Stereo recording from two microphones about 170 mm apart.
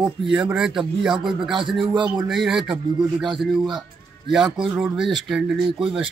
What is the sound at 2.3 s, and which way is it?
Speech, centre (ahead or behind).